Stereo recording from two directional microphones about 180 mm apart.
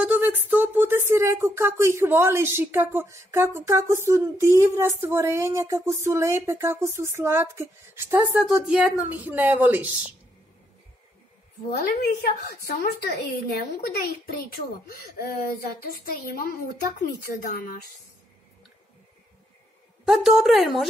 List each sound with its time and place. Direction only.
0.0 s speech: 10° right (ahead or behind)
11.9 s a woman's voice: 65° left (ahead or behind)
20.1 s a woman's voice: centre (ahead or behind)